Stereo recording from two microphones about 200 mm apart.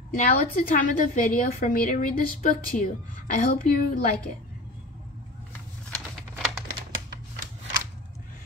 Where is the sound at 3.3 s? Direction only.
45° left (ahead or behind).